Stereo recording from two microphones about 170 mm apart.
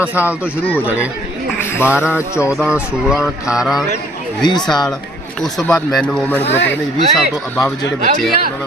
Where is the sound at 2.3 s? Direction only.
15° left (ahead or behind).